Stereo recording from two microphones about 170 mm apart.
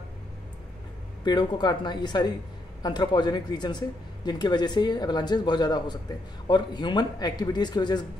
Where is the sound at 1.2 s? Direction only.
25° left (ahead or behind).